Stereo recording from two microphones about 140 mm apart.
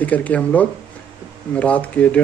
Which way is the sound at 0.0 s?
10° left (ahead or behind).